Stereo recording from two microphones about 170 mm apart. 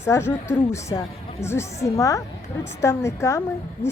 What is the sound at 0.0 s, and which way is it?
A woman's voice, 15° left (ahead or behind).